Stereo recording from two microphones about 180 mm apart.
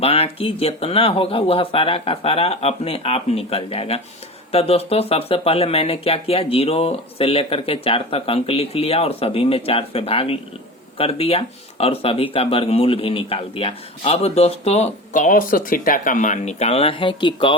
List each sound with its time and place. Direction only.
0.0 s speech: 35° left (ahead or behind)